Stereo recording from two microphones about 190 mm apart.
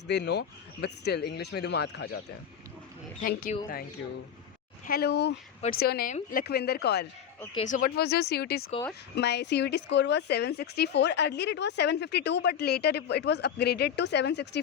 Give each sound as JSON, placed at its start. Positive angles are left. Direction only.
{"t": 0.1, "sound": "speech", "side_deg": 60}
{"t": 3.2, "sound": "speech", "side_deg": 45}
{"t": 4.9, "sound": "speech", "side_deg": 55}
{"t": 7.5, "sound": "speech", "side_deg": 40}